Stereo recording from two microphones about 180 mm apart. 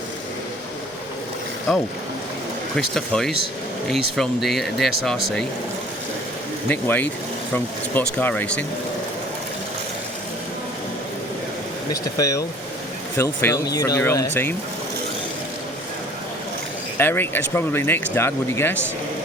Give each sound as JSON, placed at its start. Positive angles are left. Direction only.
{"t": 1.7, "sound": "speech", "side_deg": 0}
{"t": 6.7, "sound": "speech", "side_deg": 10}
{"t": 12.1, "sound": "speech", "side_deg": 20}
{"t": 17.0, "sound": "speech", "side_deg": 10}